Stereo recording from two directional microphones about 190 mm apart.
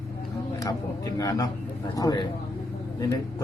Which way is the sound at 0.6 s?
20° left (ahead or behind).